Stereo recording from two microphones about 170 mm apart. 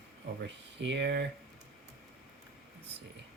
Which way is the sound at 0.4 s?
90° right.